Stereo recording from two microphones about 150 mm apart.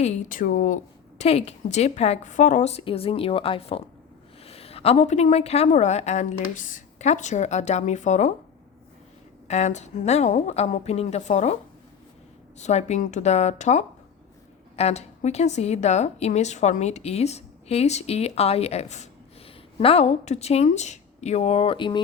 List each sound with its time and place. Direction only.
0.0 s speech: 65° left (ahead or behind)
1.2 s a woman's voice: 45° left (ahead or behind)
9.5 s a woman's voice: 50° left (ahead or behind)
12.5 s a woman's voice: 50° left (ahead or behind); by 22.0 s 30° left (ahead or behind)